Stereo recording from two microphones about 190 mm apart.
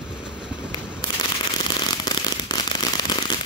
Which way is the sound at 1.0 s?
20° left (ahead or behind).